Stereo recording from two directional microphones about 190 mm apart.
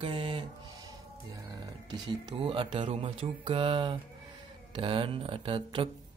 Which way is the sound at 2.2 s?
25° right (ahead or behind).